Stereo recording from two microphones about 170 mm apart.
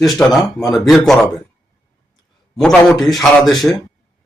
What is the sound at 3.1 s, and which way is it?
Speech, centre (ahead or behind).